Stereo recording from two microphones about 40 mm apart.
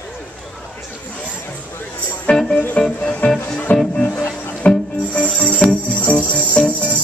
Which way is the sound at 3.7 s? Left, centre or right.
Left.